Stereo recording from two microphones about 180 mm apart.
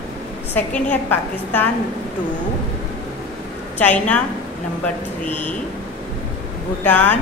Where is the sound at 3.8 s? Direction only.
10° left (ahead or behind).